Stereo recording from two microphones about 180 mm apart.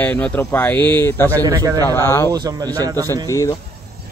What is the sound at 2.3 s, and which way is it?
Speech, 20° right (ahead or behind).